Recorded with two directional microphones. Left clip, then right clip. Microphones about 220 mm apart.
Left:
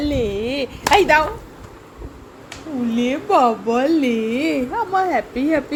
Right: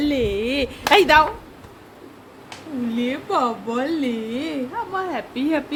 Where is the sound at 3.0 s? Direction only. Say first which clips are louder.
Left 6 dB; 15° left (ahead or behind).